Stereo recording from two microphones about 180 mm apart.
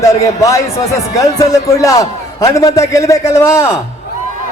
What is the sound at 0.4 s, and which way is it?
A man's voice, 20° left (ahead or behind).